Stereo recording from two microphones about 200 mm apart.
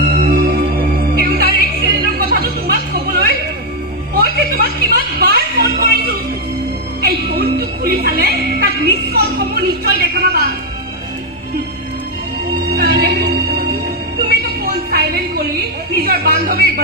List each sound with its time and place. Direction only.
0.1 s music: 50° right (ahead or behind)
2.1 s a sound: 50° right (ahead or behind)
4.1 s music: 50° right (ahead or behind)
7.0 s music: 50° right (ahead or behind)
12.7 s music: 50° right (ahead or behind)
14.6 s a sound: 50° right (ahead or behind)